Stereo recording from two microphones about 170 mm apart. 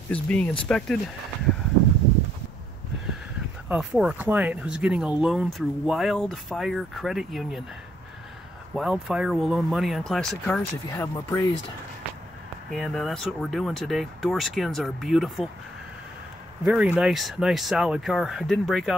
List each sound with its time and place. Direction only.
0.1 s speech: 5° left (ahead or behind)
3.6 s speech: 5° right (ahead or behind)
8.7 s speech: centre (ahead or behind)
10.9 s speech: 15° left (ahead or behind)
12.7 s speech: centre (ahead or behind)
16.6 s speech: 5° right (ahead or behind)